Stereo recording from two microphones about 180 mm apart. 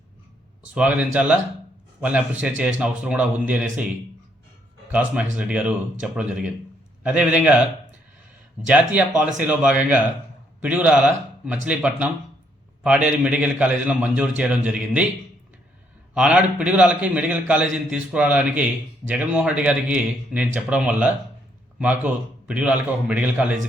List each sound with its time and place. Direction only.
0.7 s a man's voice: 5° right (ahead or behind)
4.9 s a man's voice: 5° right (ahead or behind)
8.6 s a man's voice: 5° right (ahead or behind)
16.1 s a man's voice: 5° right (ahead or behind)